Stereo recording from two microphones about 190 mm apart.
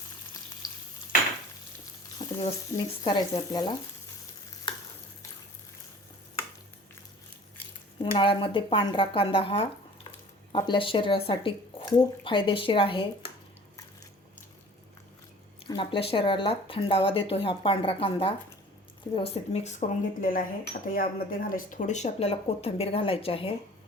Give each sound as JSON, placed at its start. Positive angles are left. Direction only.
{"t": 0.6, "sound": "frying", "side_deg": 20}
{"t": 2.2, "sound": "frying", "side_deg": 20}
{"t": 2.7, "sound": "speech", "side_deg": 25}
{"t": 7.9, "sound": "speech", "side_deg": 25}
{"t": 15.6, "sound": "speech", "side_deg": 25}